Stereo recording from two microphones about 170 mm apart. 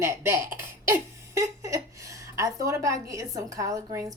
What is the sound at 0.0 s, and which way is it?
A woman's voice, 15° right (ahead or behind).